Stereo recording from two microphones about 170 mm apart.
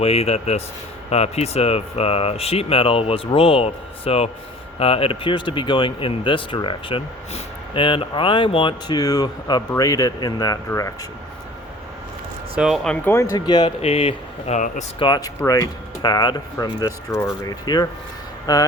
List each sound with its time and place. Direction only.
0.0 s speech: 35° left (ahead or behind); by 10.9 s 20° left (ahead or behind)
12.5 s speech: centre (ahead or behind)
13.3 s speech: 25° left (ahead or behind)
14.5 s speech: 45° left (ahead or behind)
15.0 s speech: 25° left (ahead or behind)